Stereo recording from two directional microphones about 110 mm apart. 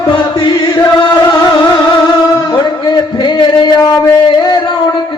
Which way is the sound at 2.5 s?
40° left (ahead or behind).